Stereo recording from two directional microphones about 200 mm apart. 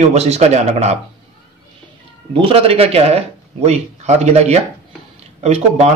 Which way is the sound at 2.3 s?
25° right (ahead or behind).